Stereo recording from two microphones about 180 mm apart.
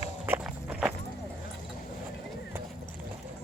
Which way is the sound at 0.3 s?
5° right (ahead or behind).